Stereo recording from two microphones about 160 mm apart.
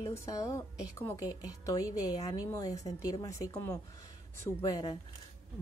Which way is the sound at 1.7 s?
20° left (ahead or behind).